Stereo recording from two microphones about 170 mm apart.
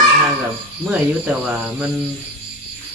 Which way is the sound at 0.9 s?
5° right (ahead or behind).